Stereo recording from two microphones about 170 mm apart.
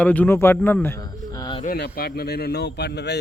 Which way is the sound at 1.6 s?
70° left (ahead or behind).